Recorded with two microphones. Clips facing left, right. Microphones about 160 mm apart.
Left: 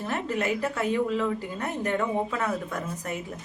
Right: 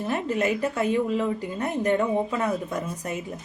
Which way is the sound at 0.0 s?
20° right (ahead or behind).